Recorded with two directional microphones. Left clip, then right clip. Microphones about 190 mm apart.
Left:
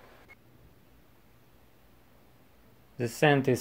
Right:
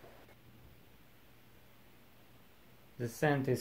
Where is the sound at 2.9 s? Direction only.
30° left (ahead or behind).